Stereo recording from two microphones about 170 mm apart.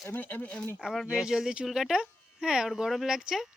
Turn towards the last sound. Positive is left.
turn(degrees=0)  # may be behind; listen again after turning